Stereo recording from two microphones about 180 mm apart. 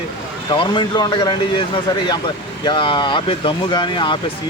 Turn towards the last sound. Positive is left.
turn(degrees=25)  # may be behind; listen again after turning